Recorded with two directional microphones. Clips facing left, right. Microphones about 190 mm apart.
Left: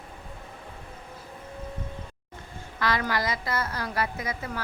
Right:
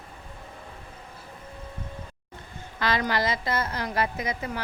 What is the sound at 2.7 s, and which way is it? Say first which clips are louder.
A woman's voice: right 1 dB; 25° right (ahead or behind).